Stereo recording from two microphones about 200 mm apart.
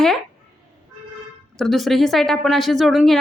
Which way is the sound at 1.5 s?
Centre (ahead or behind).